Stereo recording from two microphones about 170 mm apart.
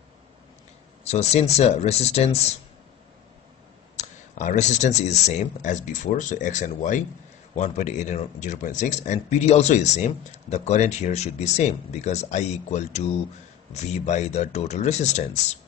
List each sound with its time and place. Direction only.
1.0 s speech: 40° left (ahead or behind)
3.9 s speech: 45° left (ahead or behind)